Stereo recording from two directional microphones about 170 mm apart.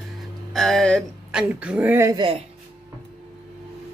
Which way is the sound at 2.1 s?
30° right (ahead or behind).